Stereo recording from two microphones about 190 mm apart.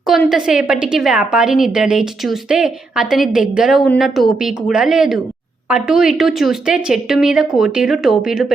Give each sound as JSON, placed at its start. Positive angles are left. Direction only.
{"t": 0.3, "sound": "a woman's voice", "side_deg": -5}